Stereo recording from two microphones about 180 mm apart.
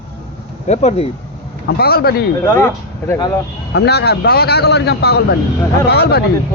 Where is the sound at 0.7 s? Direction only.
40° left (ahead or behind).